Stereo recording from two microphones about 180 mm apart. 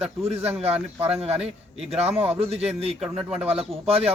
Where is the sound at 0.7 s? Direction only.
10° right (ahead or behind).